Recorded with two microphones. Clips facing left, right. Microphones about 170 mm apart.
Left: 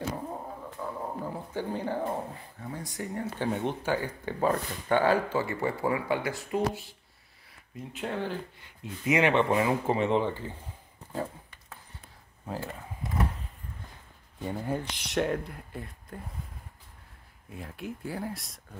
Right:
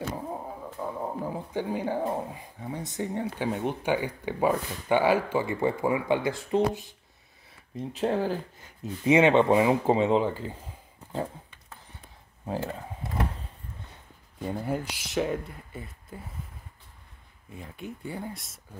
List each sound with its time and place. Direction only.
0.3 s speech: 15° right (ahead or behind)
3.4 s speech: centre (ahead or behind)
3.8 s speech: 15° right (ahead or behind)
7.7 s speech: 35° right (ahead or behind)
9.0 s speech: 25° right (ahead or behind)
12.4 s speech: 20° right (ahead or behind)
14.4 s speech: 5° right (ahead or behind)
17.5 s speech: centre (ahead or behind)